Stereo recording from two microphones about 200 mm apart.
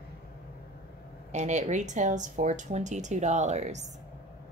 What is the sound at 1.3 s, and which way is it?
A woman's voice, 35° right (ahead or behind).